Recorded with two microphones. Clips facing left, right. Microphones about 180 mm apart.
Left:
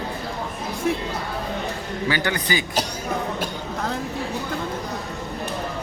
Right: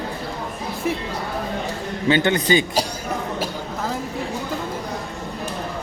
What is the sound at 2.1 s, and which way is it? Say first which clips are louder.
Speech: right 7 dB; 25° right (ahead or behind).